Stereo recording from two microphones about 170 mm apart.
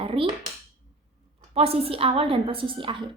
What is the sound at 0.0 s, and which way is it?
Dishes, 30° right (ahead or behind).